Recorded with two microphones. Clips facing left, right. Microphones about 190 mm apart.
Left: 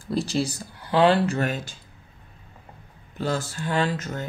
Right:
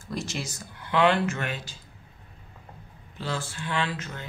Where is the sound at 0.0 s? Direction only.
35° left (ahead or behind).